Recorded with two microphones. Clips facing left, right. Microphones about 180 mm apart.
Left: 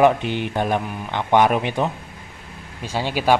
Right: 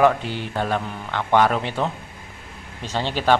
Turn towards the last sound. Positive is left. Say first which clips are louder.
# left 1 dB
turn(degrees=10)  # may be behind; listen again after turning